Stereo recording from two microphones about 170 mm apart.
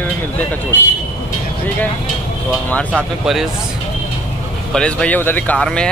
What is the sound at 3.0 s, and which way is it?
Speech, centre (ahead or behind).